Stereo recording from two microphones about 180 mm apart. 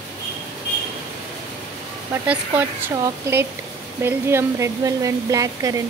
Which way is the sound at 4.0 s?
15° right (ahead or behind).